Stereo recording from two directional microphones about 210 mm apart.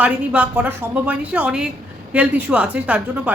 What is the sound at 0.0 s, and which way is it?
A woman's voice, 5° right (ahead or behind).